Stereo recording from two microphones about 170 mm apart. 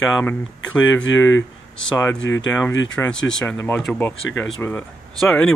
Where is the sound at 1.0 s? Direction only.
90° left.